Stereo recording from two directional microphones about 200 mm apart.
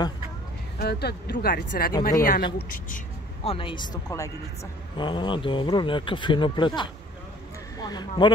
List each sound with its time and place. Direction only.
0.7 s speech: 55° left (ahead or behind)
3.4 s speech: 25° left (ahead or behind)